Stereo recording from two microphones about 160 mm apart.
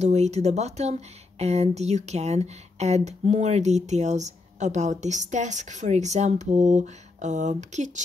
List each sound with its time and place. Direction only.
0.0 s speech: 45° right (ahead or behind)